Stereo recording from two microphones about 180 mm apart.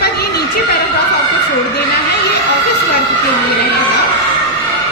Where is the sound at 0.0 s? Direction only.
60° left (ahead or behind).